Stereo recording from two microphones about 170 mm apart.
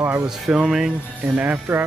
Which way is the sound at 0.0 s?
10° right (ahead or behind).